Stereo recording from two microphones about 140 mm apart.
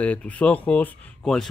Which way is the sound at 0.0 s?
10° left (ahead or behind).